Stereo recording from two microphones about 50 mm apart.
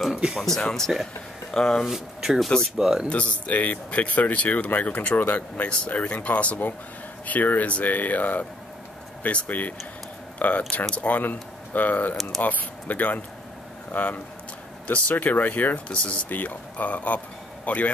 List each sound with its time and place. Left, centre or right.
0.3 s speech: centre
1.9 s speech: centre
3.1 s speech: left